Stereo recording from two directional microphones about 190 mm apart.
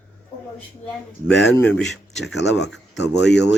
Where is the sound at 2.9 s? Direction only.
65° left (ahead or behind).